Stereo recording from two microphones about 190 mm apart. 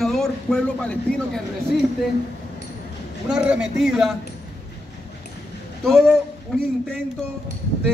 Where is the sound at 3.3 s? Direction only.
5° right (ahead or behind).